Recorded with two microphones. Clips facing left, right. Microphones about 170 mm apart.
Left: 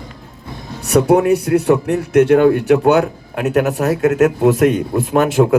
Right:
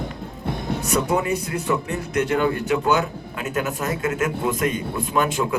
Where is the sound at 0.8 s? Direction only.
70° left (ahead or behind).